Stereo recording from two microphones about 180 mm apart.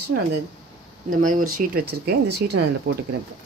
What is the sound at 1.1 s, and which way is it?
Speech, 50° right (ahead or behind).